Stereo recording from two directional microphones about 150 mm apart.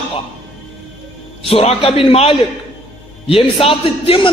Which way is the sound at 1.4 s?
40° left (ahead or behind).